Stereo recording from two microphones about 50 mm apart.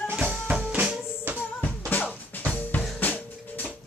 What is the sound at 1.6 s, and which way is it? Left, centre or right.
Music, left.